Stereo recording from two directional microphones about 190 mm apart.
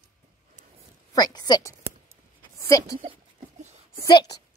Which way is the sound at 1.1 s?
20° left (ahead or behind).